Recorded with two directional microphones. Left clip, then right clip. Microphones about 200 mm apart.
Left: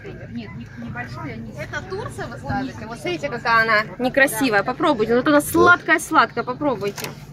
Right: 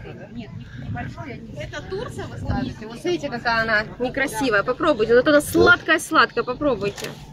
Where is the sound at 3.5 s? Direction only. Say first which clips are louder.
Left 5 dB; 40° left (ahead or behind); by 6.2 s 25° left (ahead or behind).